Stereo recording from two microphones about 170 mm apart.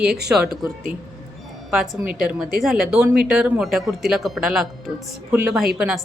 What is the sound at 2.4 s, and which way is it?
Speech, centre (ahead or behind).